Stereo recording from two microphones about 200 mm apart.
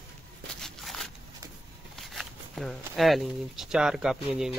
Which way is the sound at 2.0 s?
Centre (ahead or behind).